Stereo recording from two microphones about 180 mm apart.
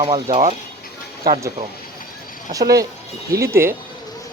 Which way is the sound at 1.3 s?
60° right (ahead or behind).